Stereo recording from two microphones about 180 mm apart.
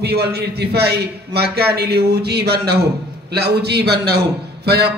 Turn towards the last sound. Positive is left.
turn(degrees=-65)  # may be behind; listen again after turning